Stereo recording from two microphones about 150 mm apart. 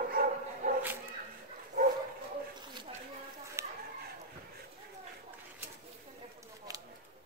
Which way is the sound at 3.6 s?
20° right (ahead or behind).